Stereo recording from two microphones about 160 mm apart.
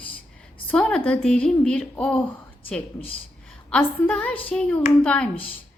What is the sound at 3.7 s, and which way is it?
A woman's voice, 5° left (ahead or behind).